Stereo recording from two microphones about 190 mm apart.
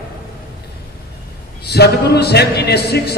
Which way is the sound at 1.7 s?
60° left (ahead or behind).